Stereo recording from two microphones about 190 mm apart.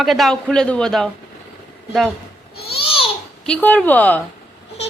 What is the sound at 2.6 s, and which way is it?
Babbling, 30° left (ahead or behind).